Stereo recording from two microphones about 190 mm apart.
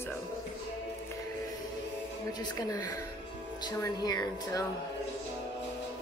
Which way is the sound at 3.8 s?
20° left (ahead or behind).